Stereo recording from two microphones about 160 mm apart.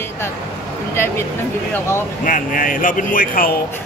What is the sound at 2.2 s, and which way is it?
A man's voice, 55° left (ahead or behind).